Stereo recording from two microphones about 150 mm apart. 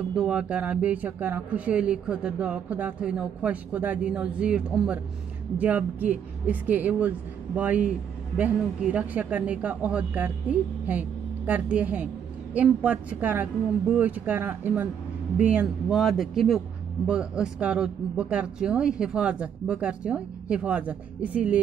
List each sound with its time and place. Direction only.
0.1 s a man's voice: 5° right (ahead or behind)